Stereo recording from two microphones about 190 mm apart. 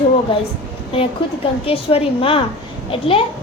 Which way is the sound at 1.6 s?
30° left (ahead or behind).